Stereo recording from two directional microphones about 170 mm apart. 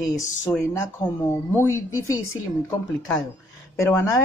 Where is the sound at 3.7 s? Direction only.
15° left (ahead or behind).